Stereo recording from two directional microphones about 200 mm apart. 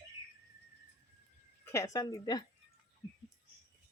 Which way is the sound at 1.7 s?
15° left (ahead or behind).